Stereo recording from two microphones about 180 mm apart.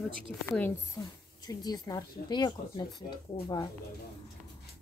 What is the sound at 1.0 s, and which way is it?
Speech, 20° left (ahead or behind).